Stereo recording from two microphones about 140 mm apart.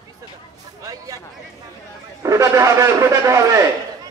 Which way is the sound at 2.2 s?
20° right (ahead or behind).